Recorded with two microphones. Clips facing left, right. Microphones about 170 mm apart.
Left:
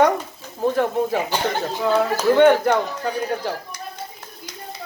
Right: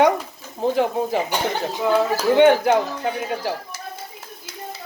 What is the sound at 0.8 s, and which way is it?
Speech, 15° right (ahead or behind).